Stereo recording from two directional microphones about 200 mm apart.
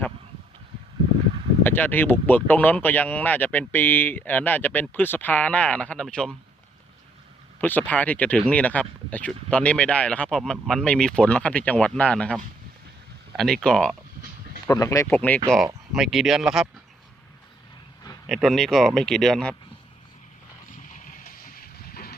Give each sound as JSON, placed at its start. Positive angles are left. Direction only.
{"t": 1.6, "sound": "speech", "side_deg": 10}
{"t": 7.6, "sound": "speech", "side_deg": 10}
{"t": 14.7, "sound": "speech", "side_deg": 15}
{"t": 18.3, "sound": "speech", "side_deg": 0}
{"t": 20.9, "sound": "vehicle", "side_deg": 40}